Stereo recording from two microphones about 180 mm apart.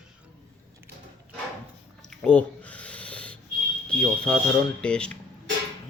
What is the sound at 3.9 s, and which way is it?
Speech, 5° left (ahead or behind).